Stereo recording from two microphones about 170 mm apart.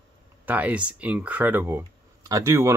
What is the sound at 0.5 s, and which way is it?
Speech, 10° right (ahead or behind).